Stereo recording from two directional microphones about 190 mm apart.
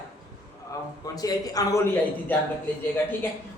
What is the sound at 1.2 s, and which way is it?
Speech, 20° left (ahead or behind).